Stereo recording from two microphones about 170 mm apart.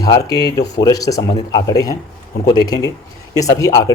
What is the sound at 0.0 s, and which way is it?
Speech, 20° left (ahead or behind).